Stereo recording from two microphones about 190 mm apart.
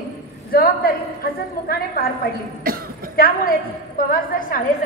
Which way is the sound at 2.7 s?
50° right (ahead or behind).